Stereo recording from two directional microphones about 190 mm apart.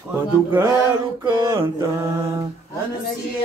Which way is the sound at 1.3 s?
15° right (ahead or behind).